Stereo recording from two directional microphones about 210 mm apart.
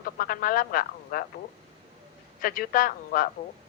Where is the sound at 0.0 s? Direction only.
40° left (ahead or behind).